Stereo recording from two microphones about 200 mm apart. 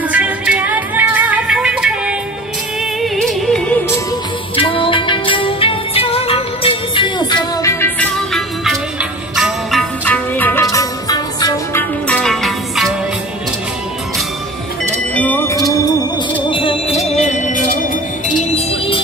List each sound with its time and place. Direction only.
0.1 s music: 5° right (ahead or behind)
4.6 s music: 25° left (ahead or behind)
12.1 s music: 5° left (ahead or behind)
15.1 s music: 10° left (ahead or behind)
16.4 s music: 25° left (ahead or behind)